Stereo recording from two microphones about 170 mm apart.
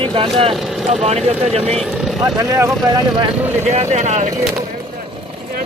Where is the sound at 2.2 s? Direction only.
20° right (ahead or behind).